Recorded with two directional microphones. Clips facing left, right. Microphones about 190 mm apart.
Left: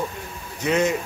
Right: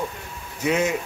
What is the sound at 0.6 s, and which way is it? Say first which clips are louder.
Speech: left 1 dB; 5° right (ahead or behind).